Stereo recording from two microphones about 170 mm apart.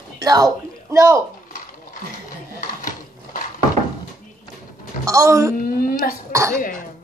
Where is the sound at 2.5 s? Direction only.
50° left (ahead or behind).